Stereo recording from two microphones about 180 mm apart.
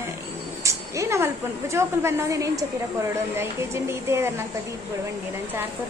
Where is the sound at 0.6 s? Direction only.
15° right (ahead or behind).